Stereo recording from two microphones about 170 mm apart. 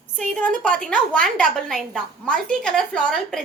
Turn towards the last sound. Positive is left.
turn(degrees=5)  # may be behind; listen again after turning